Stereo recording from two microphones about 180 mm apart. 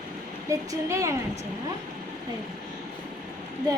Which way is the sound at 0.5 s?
15° right (ahead or behind).